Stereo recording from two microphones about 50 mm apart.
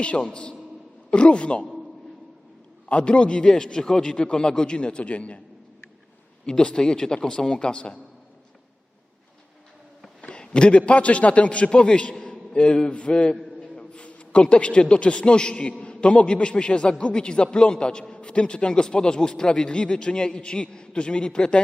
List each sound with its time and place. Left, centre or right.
0.0 s a man's voice: left
2.9 s a man's voice: left
6.4 s a man's voice: centre
10.2 s a man's voice: centre